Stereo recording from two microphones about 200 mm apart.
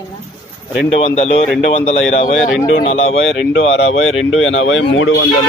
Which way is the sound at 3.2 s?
70° left (ahead or behind).